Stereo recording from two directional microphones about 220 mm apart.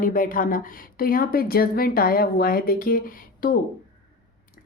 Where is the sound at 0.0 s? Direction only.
40° left (ahead or behind).